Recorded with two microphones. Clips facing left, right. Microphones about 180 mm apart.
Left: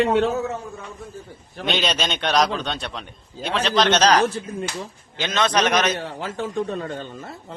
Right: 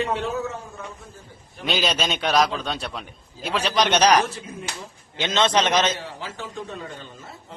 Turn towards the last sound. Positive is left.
turn(degrees=55)  # may be behind; listen again after turning